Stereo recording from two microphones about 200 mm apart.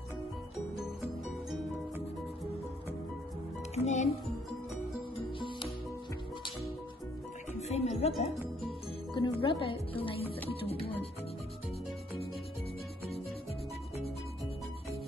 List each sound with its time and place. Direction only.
3.7 s speech: 35° left (ahead or behind)
7.6 s music: 35° left (ahead or behind)
8.2 s speech: 25° left (ahead or behind)